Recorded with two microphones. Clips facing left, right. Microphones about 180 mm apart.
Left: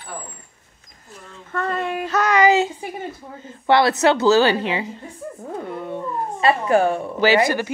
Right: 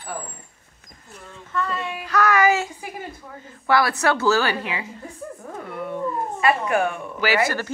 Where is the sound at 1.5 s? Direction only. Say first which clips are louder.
Left 3 dB; 50° left (ahead or behind).